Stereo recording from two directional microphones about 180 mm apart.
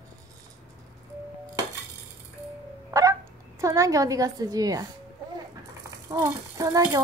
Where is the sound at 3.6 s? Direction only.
15° right (ahead or behind).